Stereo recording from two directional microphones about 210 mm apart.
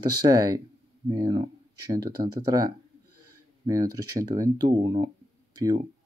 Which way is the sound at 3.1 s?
90° right.